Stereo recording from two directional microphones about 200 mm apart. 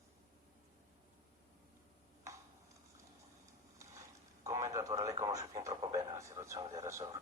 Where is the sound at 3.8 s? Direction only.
15° right (ahead or behind).